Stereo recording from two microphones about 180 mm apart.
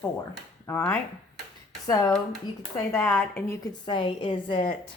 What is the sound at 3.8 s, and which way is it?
Speech, 25° left (ahead or behind).